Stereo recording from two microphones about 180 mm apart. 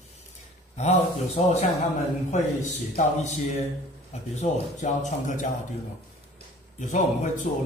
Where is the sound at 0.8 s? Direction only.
35° left (ahead or behind).